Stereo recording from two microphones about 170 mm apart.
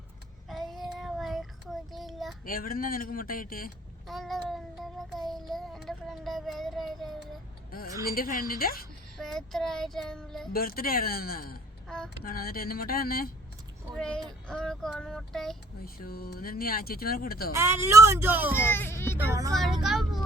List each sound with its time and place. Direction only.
0.4 s child singing: centre (ahead or behind)
2.4 s speech: 60° left (ahead or behind)
4.0 s child singing: centre (ahead or behind)
8.0 s speech: 60° left (ahead or behind)
9.1 s child singing: centre (ahead or behind)
10.5 s speech: 60° left (ahead or behind)
13.9 s speech: 5° left (ahead or behind)
14.4 s child singing: 5° left (ahead or behind)
15.8 s speech: 60° left (ahead or behind)
17.5 s speech: 15° right (ahead or behind)
18.5 s speech: 15° left (ahead or behind)
19.1 s speech: 20° right (ahead or behind)
19.5 s child singing: centre (ahead or behind)